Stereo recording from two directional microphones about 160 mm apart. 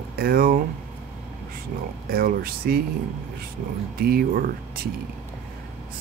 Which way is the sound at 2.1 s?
70° right (ahead or behind).